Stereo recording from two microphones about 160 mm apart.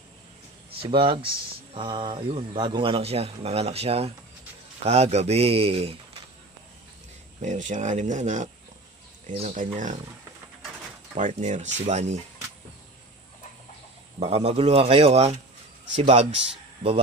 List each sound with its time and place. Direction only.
0.7 s speech: 35° right (ahead or behind)
7.4 s speech: 50° right (ahead or behind)
11.1 s speech: 50° right (ahead or behind)
14.2 s speech: 40° right (ahead or behind)